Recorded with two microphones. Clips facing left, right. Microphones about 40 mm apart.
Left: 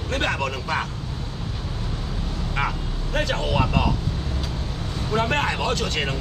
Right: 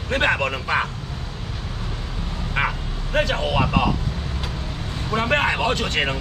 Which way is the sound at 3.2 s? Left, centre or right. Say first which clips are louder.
Right 2 dB; centre.